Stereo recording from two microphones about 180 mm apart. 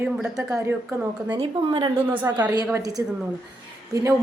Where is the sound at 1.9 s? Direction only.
10° right (ahead or behind).